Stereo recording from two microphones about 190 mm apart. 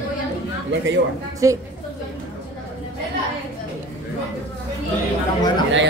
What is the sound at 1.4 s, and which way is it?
Speech, 15° right (ahead or behind).